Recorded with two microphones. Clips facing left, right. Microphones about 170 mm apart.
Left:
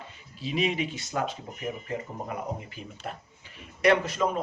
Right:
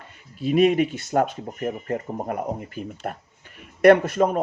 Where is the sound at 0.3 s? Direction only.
55° right (ahead or behind).